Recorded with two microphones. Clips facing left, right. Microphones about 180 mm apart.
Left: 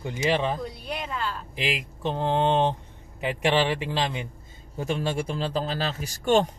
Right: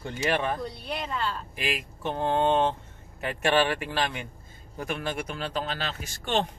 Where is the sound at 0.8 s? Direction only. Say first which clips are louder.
Even; centre (ahead or behind).